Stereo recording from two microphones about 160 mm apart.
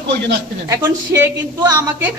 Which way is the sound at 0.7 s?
15° right (ahead or behind).